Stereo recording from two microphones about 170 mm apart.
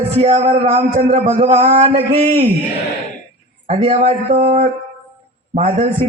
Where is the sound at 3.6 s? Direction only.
35° right (ahead or behind).